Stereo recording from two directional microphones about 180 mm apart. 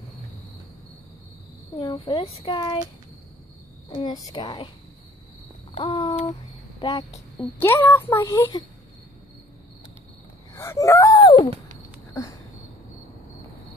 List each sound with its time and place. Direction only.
2.0 s speech: 25° left (ahead or behind)
3.9 s speech: 20° left (ahead or behind)
5.8 s speech: 30° left (ahead or behind)
7.3 s speech: 10° left (ahead or behind)
10.5 s wheeze: 15° left (ahead or behind)
12.1 s a sound: 15° left (ahead or behind)